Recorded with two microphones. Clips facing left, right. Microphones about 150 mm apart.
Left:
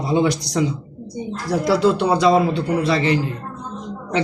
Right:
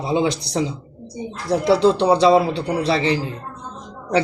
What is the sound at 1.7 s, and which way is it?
A man's voice, 30° right (ahead or behind).